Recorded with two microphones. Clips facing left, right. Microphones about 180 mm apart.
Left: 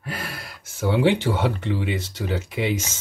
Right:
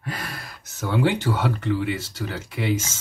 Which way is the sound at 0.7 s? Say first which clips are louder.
Left 3 dB; 15° left (ahead or behind).